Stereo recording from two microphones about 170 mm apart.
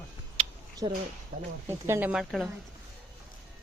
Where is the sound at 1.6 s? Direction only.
15° right (ahead or behind).